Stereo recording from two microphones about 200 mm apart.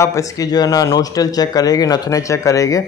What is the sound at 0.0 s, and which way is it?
Speech, 15° left (ahead or behind).